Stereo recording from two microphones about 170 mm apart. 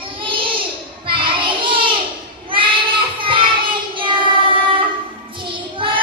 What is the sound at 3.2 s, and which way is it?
Child singing, 30° right (ahead or behind).